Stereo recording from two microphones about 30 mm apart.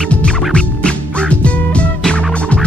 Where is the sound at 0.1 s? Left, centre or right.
Left.